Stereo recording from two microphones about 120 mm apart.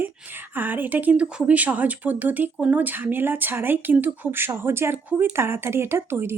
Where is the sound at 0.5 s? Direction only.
15° right (ahead or behind).